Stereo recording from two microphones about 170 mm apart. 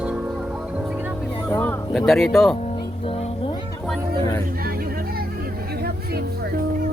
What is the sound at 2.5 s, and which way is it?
Music, 40° left (ahead or behind).